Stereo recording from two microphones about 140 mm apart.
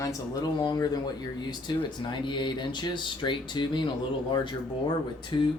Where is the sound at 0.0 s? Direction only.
25° left (ahead or behind).